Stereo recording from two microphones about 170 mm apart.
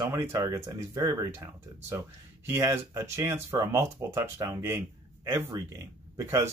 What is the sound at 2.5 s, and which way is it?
Speech, 15° right (ahead or behind).